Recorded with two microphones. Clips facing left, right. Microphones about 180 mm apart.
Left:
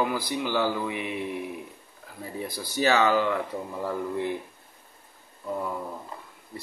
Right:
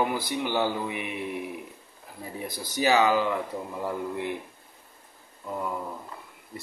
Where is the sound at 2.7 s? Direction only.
15° right (ahead or behind).